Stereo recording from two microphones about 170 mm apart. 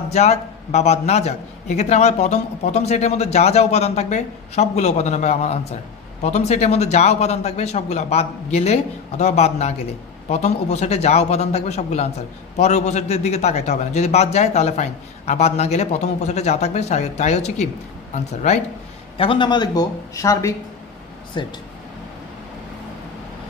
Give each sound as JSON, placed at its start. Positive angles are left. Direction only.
{"t": 0.1, "sound": "a man's voice", "side_deg": 40}
{"t": 19.1, "sound": "speech", "side_deg": 30}